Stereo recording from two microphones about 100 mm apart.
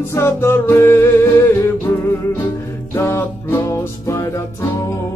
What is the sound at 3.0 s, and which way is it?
Music, 20° left (ahead or behind).